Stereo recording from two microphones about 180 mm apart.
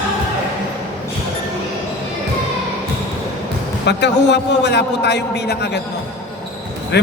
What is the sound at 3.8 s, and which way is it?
A man's voice, 70° left (ahead or behind).